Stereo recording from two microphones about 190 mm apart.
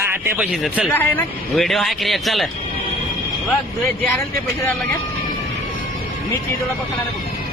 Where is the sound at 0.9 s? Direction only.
10° left (ahead or behind).